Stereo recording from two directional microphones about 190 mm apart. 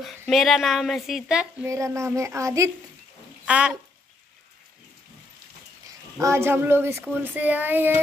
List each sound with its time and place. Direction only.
0.3 s a woman's voice: centre (ahead or behind)
1.7 s speech: 15° right (ahead or behind)
6.1 s speech: 15° right (ahead or behind)